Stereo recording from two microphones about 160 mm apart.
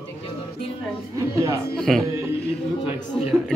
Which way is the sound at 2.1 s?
15° right (ahead or behind).